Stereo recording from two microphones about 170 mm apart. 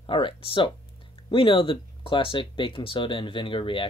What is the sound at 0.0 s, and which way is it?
Speech, 30° left (ahead or behind).